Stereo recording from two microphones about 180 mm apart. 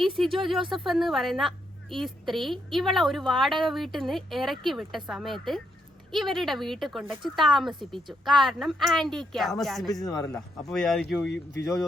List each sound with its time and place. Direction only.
0.2 s a woman's voice: centre (ahead or behind)
7.0 s speech: 10° right (ahead or behind)
7.3 s a woman's voice: centre (ahead or behind)
10.0 s a man's voice: 20° left (ahead or behind)
10.7 s a woman's voice: centre (ahead or behind)
11.5 s speech: 15° left (ahead or behind)